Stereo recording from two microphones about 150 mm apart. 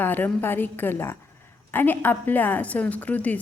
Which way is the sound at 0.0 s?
15° left (ahead or behind).